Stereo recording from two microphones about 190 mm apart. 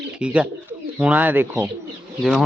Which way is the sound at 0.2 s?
5° right (ahead or behind).